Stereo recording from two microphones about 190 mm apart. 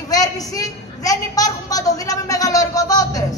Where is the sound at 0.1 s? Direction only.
20° left (ahead or behind).